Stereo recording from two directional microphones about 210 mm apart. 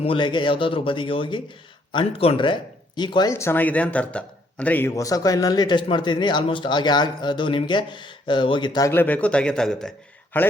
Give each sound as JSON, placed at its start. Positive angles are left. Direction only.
{"t": 0.0, "sound": "a man's voice", "side_deg": 25}